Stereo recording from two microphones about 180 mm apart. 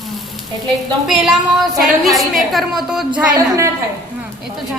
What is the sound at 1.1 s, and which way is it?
A woman's voice, 5° right (ahead or behind).